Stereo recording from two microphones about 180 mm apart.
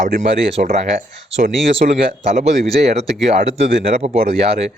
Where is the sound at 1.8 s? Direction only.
55° right (ahead or behind).